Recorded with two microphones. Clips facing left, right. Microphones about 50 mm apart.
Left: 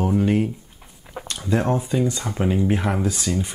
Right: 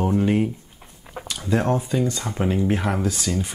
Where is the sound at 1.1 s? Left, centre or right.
Centre.